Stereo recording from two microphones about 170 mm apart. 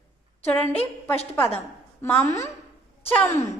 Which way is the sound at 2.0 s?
10° left (ahead or behind).